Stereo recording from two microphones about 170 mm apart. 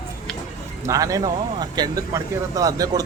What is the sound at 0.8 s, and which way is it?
Speech, 20° right (ahead or behind).